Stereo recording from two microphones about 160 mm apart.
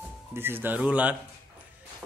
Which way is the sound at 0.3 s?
15° right (ahead or behind).